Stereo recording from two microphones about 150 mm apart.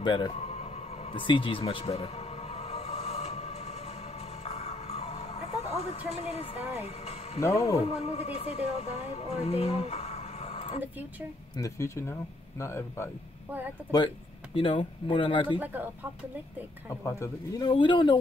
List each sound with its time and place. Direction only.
0.0 s speech: 30° left (ahead or behind)
0.4 s a sound: 45° left (ahead or behind)
1.1 s music: 35° left (ahead or behind)
7.3 s speech: 20° left (ahead or behind)
7.6 s speech: 45° left (ahead or behind)
11.5 s speech: 20° left (ahead or behind)
13.9 s speech: 35° left (ahead or behind)
15.6 s speech: 10° right (ahead or behind)
17.0 s speech: 20° left (ahead or behind)